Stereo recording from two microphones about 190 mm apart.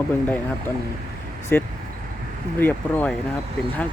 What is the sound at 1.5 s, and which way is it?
Speech, 10° left (ahead or behind).